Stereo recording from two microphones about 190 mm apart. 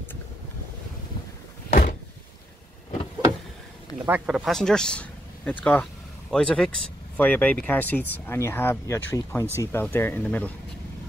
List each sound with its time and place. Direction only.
1.7 s door: 45° left (ahead or behind)
4.0 s speech: 10° right (ahead or behind)
4.5 s speech: 5° left (ahead or behind)